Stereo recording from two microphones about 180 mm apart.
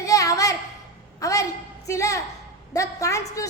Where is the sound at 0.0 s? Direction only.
20° left (ahead or behind).